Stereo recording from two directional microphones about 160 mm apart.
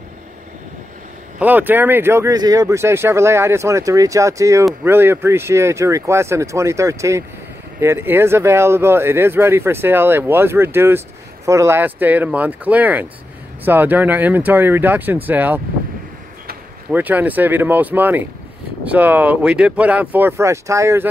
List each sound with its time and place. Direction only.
1.4 s speech: 10° right (ahead or behind)
16.9 s speech: 10° right (ahead or behind)